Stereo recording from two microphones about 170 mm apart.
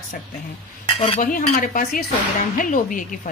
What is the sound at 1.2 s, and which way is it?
A woman's voice, 50° left (ahead or behind).